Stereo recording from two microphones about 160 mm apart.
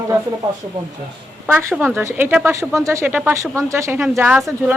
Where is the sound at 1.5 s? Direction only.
10° right (ahead or behind).